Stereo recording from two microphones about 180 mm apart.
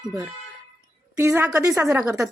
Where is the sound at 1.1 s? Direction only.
15° right (ahead or behind).